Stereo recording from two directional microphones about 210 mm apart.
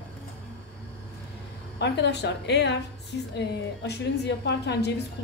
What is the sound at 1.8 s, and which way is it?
A woman's voice, 55° left (ahead or behind).